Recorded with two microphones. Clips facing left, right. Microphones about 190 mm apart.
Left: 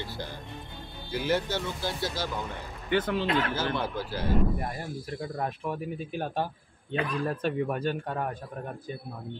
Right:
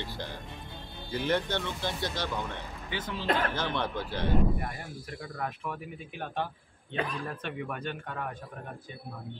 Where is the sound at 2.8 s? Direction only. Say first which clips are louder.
Left 10 dB; 55° left (ahead or behind).